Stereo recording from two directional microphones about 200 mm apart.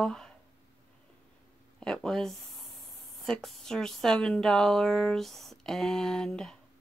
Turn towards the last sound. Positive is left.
turn(degrees=5)  # may be behind; listen again after turning